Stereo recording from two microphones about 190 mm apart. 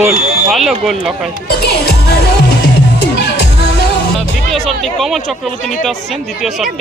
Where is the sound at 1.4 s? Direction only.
55° left (ahead or behind).